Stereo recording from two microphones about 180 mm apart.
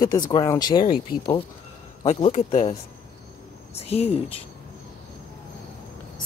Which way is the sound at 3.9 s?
35° left (ahead or behind).